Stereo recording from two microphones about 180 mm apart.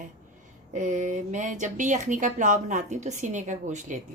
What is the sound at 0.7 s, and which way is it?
Speech, 40° right (ahead or behind).